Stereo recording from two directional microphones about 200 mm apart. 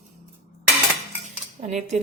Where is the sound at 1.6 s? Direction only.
35° right (ahead or behind).